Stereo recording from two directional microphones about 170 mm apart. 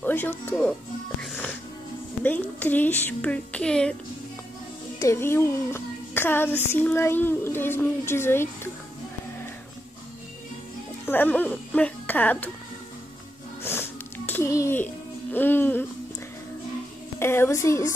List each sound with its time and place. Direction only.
0.0 s music: 10° left (ahead or behind)
2.2 s a child's voice: 10° left (ahead or behind)
4.9 s a child's voice: 15° left (ahead or behind)
11.1 s speech: 10° left (ahead or behind)
13.6 s music: 15° left (ahead or behind)
17.2 s a child's voice: 15° left (ahead or behind)